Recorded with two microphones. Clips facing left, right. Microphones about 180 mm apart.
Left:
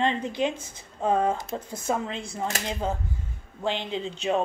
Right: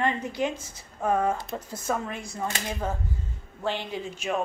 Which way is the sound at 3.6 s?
20° left (ahead or behind).